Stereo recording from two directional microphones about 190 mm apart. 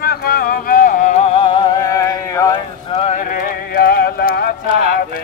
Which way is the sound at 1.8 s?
15° left (ahead or behind).